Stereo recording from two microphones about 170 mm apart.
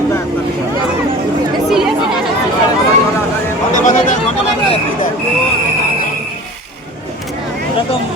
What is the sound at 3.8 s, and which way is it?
Speech, 45° left (ahead or behind).